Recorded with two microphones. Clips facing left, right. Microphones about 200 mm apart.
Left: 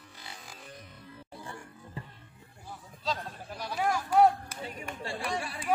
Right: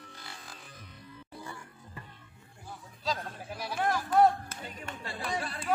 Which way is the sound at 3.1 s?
Centre (ahead or behind).